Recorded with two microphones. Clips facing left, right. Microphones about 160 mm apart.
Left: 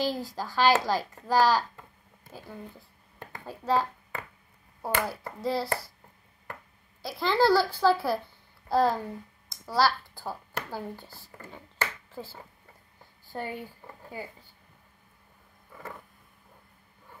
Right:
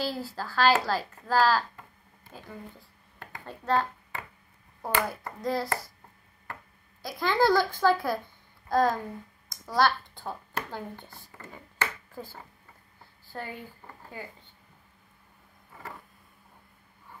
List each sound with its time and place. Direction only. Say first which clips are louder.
0.0 s a woman's voice: left 2 dB; 15° left (ahead or behind)
2.3 s a child's voice: left 1 dB; centre (ahead or behind)
4.8 s a child's voice: right 1 dB; 5° left (ahead or behind)
7.0 s a child's voice: left 1 dB; centre (ahead or behind)
13.3 s a woman's voice: left 3 dB; 15° left (ahead or behind)